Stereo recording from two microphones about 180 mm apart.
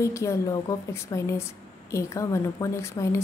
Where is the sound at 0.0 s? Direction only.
15° left (ahead or behind).